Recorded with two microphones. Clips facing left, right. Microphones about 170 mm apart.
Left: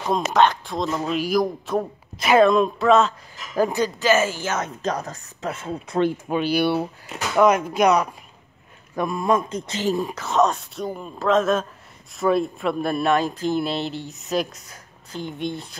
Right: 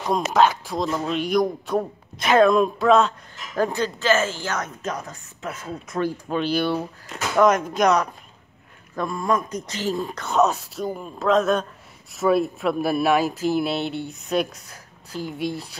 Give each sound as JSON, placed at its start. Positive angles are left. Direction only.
{"t": 0.3, "sound": "a man's voice", "side_deg": -5}
{"t": 4.8, "sound": "speech", "side_deg": 40}
{"t": 5.9, "sound": "speech", "side_deg": 20}
{"t": 6.3, "sound": "speech", "side_deg": 10}
{"t": 9.9, "sound": "a man's voice", "side_deg": 5}